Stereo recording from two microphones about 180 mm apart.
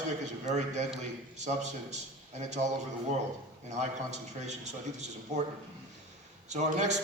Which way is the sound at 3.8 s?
40° right (ahead or behind).